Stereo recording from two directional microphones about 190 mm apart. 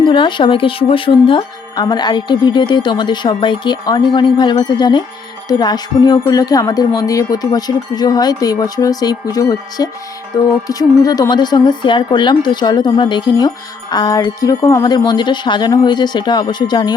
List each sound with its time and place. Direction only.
0.0 s speech: 25° left (ahead or behind)